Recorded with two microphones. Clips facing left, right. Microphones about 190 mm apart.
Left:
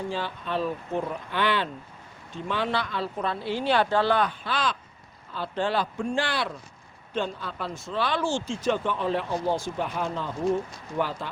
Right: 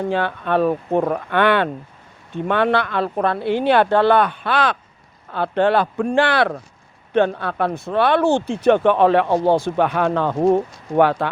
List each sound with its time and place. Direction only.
0.0 s speech: 60° right (ahead or behind)